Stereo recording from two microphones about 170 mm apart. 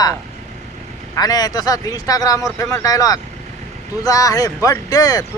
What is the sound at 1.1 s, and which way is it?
Speech, 20° left (ahead or behind).